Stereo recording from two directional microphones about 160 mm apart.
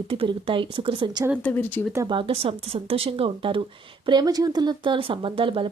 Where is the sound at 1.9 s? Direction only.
30° right (ahead or behind).